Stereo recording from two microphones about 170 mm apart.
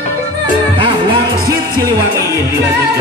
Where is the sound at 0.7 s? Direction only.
30° right (ahead or behind).